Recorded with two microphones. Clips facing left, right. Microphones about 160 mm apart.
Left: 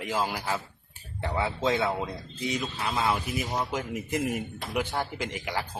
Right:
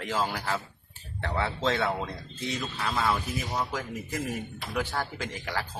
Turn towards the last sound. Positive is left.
turn(degrees=15)  # may be behind; listen again after turning